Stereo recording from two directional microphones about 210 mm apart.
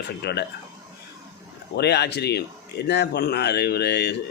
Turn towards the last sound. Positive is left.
turn(degrees=55)  # may be behind; listen again after turning